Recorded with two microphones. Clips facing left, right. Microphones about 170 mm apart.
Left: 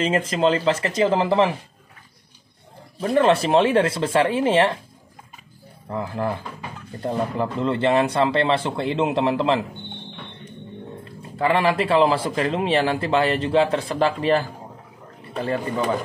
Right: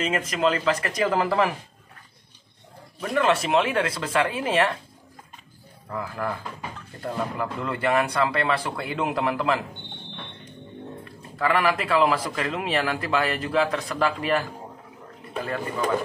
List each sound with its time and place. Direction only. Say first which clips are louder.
0.3 s a man's voice: left 2 dB; 30° left (ahead or behind)
3.0 s a man's voice: left 5 dB; 30° left (ahead or behind)
5.9 s a man's voice: left 4 dB; 25° left (ahead or behind)
11.3 s a man's voice: left 3 dB; 25° left (ahead or behind)